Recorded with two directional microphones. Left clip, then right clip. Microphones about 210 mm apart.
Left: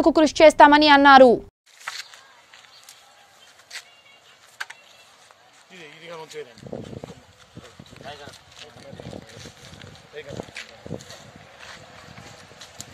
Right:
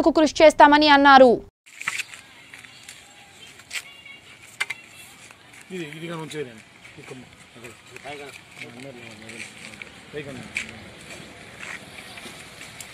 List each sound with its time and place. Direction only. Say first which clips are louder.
0.0 s speech: left 1 dB; centre (ahead or behind)
6.0 s speech: even; 20° right (ahead or behind)